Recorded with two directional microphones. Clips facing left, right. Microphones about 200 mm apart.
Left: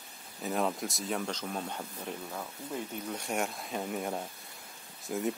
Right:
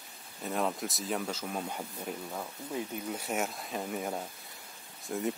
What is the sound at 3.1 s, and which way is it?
Speech, centre (ahead or behind).